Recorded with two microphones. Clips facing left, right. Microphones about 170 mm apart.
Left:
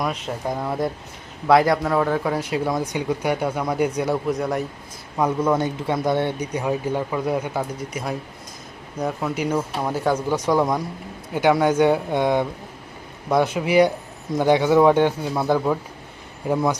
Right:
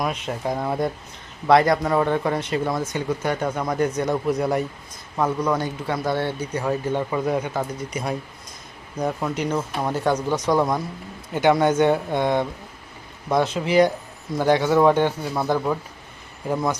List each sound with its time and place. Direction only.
0.1 s speech: centre (ahead or behind)
5.5 s speech: 20° left (ahead or behind)